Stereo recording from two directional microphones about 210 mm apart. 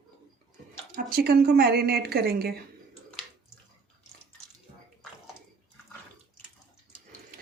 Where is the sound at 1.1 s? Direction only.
45° right (ahead or behind).